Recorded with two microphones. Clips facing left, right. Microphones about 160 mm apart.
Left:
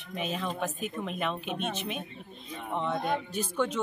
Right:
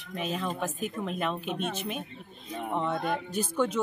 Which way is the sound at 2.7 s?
5° right (ahead or behind).